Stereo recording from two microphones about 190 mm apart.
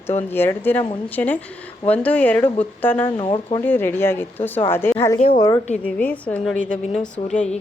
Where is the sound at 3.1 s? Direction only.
25° left (ahead or behind).